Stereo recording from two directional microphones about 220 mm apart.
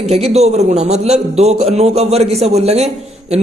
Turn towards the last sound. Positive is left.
turn(degrees=-30)  # may be behind; listen again after turning